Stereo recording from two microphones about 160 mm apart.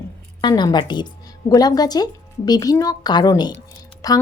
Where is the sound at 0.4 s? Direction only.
25° left (ahead or behind).